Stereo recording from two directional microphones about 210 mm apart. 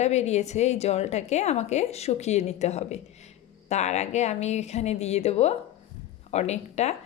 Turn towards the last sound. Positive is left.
turn(degrees=30)  # may be behind; listen again after turning